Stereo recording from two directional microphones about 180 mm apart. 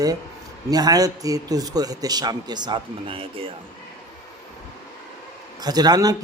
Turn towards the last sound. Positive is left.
turn(degrees=-20)  # may be behind; listen again after turning